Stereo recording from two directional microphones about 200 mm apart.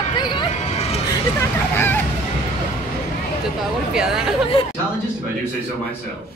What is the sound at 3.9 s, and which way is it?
Speech, 5° right (ahead or behind).